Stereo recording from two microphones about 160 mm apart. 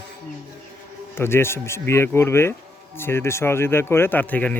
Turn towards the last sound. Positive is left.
turn(degrees=10)  # may be behind; listen again after turning